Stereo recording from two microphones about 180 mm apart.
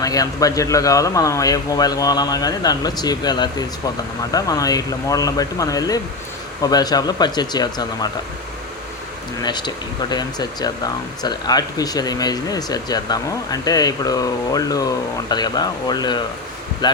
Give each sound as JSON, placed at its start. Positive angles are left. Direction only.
{"t": 0.0, "sound": "speech", "side_deg": 20}
{"t": 9.4, "sound": "speech", "side_deg": 25}